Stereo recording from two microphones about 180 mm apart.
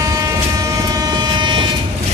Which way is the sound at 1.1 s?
25° right (ahead or behind).